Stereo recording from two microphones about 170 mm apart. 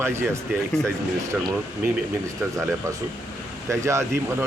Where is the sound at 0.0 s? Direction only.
15° right (ahead or behind).